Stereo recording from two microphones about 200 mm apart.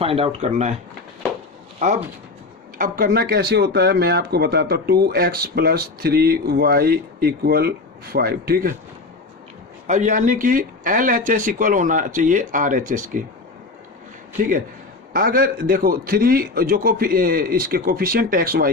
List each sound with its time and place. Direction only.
0.0 s speech: 30° right (ahead or behind)
2.7 s speech: 45° right (ahead or behind)
9.8 s speech: 35° right (ahead or behind)
15.1 s speech: 45° right (ahead or behind)